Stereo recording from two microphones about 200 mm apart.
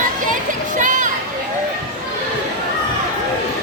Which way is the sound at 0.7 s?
40° right (ahead or behind).